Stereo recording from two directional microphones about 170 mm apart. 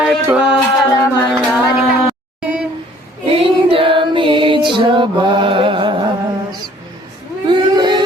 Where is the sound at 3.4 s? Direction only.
30° right (ahead or behind).